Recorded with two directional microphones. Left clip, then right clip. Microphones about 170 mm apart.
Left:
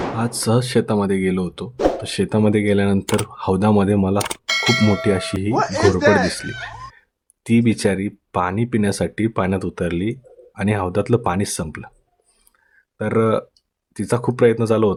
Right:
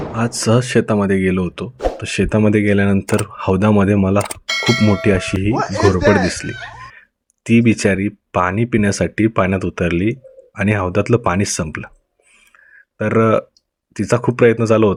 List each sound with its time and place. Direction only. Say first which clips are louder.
0.2 s speech: right 6 dB; 20° right (ahead or behind)
4.4 s bell: left 1 dB; centre (ahead or behind)
5.0 s speech: right 3 dB; 15° right (ahead or behind)
5.5 s speech: even; centre (ahead or behind)
6.1 s speech: right 1 dB; 15° right (ahead or behind)
6.4 s speech: right 1 dB; centre (ahead or behind)
7.4 s speech: right 4 dB; 15° right (ahead or behind)
13.0 s speech: right 4 dB; 15° right (ahead or behind)